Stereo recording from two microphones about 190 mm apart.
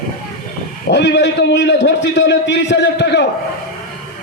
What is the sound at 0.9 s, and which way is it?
A man's voice, 65° left (ahead or behind).